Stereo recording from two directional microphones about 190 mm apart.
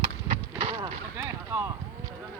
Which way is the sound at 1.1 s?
15° right (ahead or behind).